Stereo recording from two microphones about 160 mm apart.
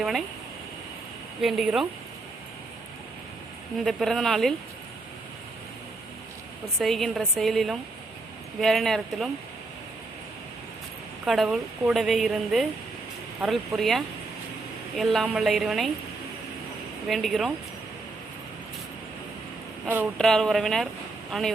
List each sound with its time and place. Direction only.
0.0 s a woman's voice: centre (ahead or behind)
1.4 s a woman's voice: centre (ahead or behind)
3.8 s a woman's voice: centre (ahead or behind)
6.7 s a woman's voice: centre (ahead or behind)
11.3 s a woman's voice: centre (ahead or behind)
17.1 s a woman's voice: centre (ahead or behind)
20.1 s a woman's voice: 5° left (ahead or behind)